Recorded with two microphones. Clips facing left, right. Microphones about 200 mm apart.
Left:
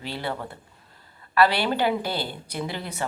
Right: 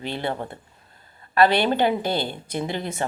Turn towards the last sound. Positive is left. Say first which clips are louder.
# right 4 dB
turn(degrees=-25)  # may be behind; listen again after turning